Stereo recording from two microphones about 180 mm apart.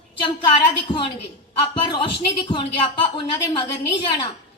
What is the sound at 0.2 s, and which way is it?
A woman's voice, 25° left (ahead or behind).